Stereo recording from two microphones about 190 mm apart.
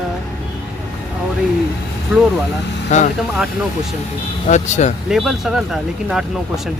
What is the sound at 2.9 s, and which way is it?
Speech, 40° left (ahead or behind).